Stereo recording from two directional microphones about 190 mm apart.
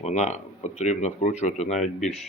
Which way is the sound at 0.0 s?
40° left (ahead or behind).